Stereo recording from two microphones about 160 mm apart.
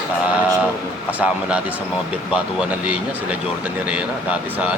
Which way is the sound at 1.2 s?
10° right (ahead or behind).